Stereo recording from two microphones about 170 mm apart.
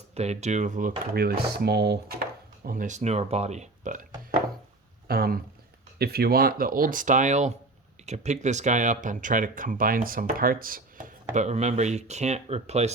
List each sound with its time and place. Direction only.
0.1 s speech: 40° right (ahead or behind); by 2.2 s 70° right (ahead or behind)
2.6 s speech: 50° right (ahead or behind)
5.0 s speech: 65° right (ahead or behind); by 12.9 s 40° right (ahead or behind)